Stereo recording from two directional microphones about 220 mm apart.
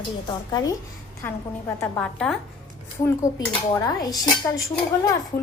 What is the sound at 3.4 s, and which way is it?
Speech, 15° left (ahead or behind).